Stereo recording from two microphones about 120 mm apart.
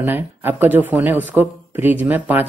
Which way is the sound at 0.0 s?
15° right (ahead or behind).